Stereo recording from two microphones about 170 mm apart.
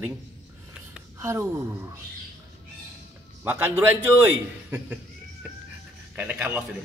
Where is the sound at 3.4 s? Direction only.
15° right (ahead or behind).